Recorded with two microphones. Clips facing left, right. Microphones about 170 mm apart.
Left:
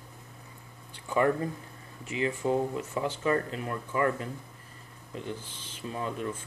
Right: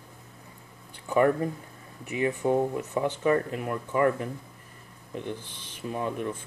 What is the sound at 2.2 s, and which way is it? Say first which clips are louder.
Speech: right 3 dB; 15° right (ahead or behind).